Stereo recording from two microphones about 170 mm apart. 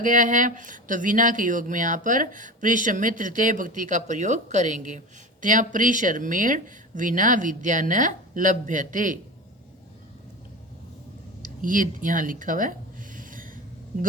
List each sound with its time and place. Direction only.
0.0 s speech: 50° right (ahead or behind)
11.4 s speech: 50° right (ahead or behind)
13.1 s snort: 55° right (ahead or behind)